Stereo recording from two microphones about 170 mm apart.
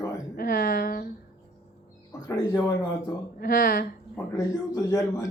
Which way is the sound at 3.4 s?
60° left (ahead or behind).